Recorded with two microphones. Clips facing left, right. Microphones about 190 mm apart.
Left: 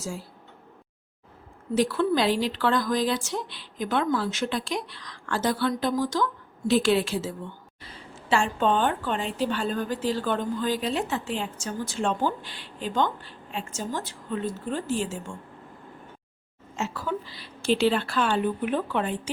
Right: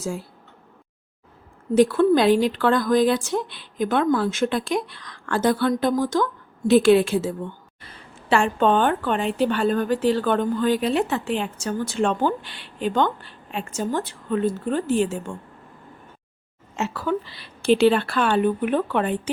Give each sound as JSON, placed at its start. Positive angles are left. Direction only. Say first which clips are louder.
{"t": 1.7, "sound": "a woman's voice", "louder": "right 7 dB", "side_deg": -50}
{"t": 16.7, "sound": "a woman's voice", "louder": "right 5 dB", "side_deg": -65}